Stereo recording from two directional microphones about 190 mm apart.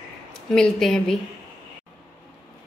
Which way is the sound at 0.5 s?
5° left (ahead or behind).